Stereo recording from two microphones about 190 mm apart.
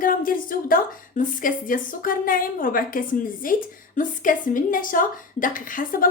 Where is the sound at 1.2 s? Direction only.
45° left (ahead or behind).